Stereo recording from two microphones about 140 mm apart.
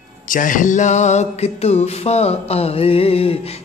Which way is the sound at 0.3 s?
70° left (ahead or behind).